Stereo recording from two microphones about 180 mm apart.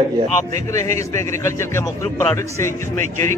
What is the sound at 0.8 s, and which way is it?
Speech, 40° right (ahead or behind).